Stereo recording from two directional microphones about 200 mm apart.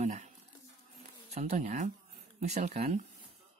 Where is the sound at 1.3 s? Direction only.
35° right (ahead or behind).